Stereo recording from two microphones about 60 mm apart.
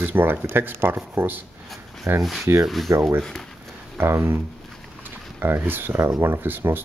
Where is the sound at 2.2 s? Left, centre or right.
Centre.